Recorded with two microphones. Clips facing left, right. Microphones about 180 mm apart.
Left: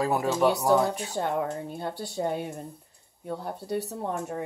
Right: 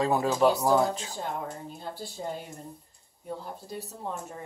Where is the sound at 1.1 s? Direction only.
70° left (ahead or behind).